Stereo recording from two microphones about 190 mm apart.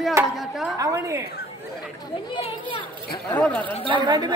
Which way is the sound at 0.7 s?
15° right (ahead or behind).